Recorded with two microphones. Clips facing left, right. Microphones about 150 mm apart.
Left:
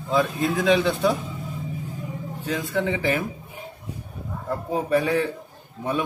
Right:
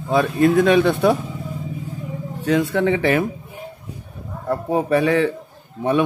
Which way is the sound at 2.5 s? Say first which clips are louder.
Right 8 dB; 65° right (ahead or behind).